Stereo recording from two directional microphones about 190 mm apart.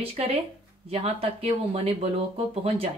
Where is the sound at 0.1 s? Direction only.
30° right (ahead or behind).